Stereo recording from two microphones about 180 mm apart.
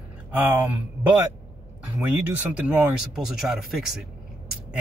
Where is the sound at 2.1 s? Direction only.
10° right (ahead or behind).